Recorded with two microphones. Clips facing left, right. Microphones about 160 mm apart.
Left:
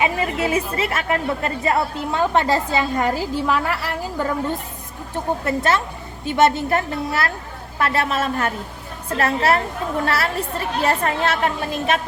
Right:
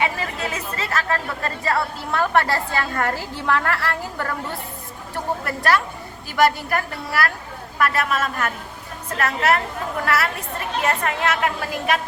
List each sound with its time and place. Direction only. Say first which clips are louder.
0.0 s a woman's voice: left 4 dB; 25° left (ahead or behind)